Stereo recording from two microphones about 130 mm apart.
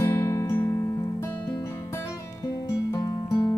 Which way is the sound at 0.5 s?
20° left (ahead or behind).